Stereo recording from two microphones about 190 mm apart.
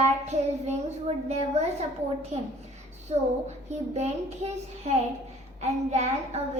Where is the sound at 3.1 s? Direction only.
35° right (ahead or behind).